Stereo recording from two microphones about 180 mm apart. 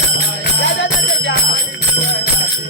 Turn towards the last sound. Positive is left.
turn(degrees=75)  # may be behind; listen again after turning